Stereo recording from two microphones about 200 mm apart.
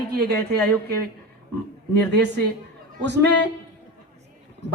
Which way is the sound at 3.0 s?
60° right (ahead or behind).